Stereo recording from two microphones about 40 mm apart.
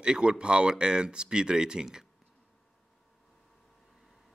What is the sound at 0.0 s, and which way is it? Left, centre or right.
Speech, right.